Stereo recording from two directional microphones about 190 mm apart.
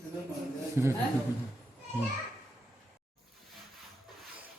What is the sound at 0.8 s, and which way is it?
Speech, 15° right (ahead or behind).